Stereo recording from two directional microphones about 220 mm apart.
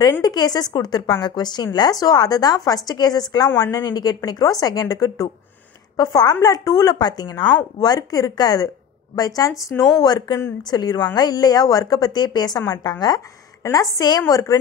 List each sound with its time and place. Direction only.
0.0 s a woman's voice: 20° left (ahead or behind)